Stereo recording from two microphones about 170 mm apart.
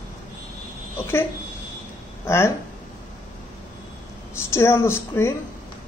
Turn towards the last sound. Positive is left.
turn(degrees=15)  # may be behind; listen again after turning